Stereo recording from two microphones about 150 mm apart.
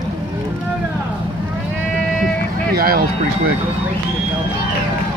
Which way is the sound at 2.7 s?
85° right.